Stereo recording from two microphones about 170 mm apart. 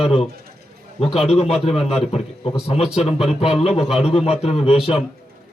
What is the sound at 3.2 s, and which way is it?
Speech, 35° left (ahead or behind).